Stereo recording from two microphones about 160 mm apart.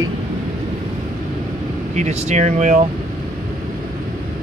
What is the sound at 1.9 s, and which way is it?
Speech, 45° right (ahead or behind).